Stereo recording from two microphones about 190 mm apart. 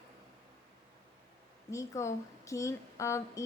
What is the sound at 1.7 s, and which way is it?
A woman's voice, 15° left (ahead or behind).